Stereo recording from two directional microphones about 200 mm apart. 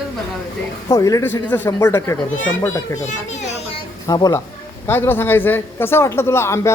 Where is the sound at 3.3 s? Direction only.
35° left (ahead or behind).